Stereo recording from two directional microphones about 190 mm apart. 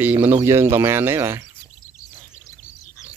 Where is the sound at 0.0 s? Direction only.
10° right (ahead or behind).